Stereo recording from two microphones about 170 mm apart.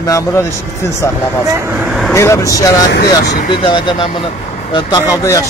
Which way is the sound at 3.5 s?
30° left (ahead or behind).